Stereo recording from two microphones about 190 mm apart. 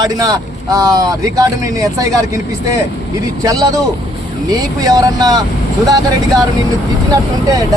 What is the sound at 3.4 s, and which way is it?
Speech, 20° right (ahead or behind).